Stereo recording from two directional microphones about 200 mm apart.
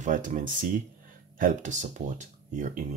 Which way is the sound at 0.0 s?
40° right (ahead or behind).